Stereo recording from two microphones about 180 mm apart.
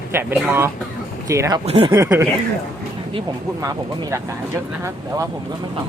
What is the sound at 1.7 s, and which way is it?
Speech, 35° right (ahead or behind).